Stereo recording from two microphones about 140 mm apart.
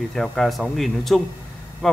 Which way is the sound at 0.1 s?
Centre (ahead or behind).